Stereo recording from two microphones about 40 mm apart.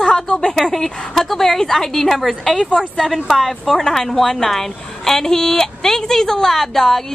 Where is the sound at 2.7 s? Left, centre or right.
Centre.